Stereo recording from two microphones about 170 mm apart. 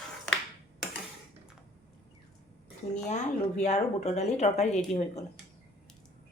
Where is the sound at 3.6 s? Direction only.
40° left (ahead or behind).